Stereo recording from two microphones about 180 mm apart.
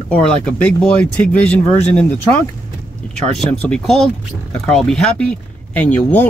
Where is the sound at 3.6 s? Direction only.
5° left (ahead or behind).